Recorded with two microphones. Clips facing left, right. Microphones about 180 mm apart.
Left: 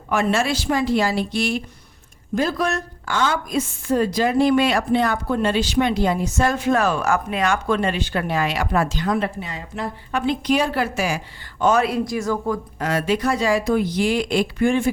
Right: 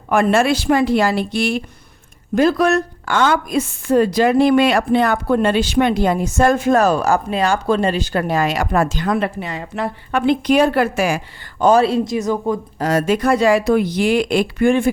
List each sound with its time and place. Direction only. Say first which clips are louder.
0.1 s a woman's voice: right 5 dB; 55° right (ahead or behind)
11.6 s speech: right 5 dB; 30° right (ahead or behind)
12.8 s a woman's voice: right 5 dB; 40° right (ahead or behind); by 14.8 s 60° right (ahead or behind)